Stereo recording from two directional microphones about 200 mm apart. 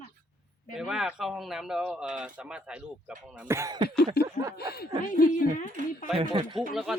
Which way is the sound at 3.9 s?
55° left (ahead or behind).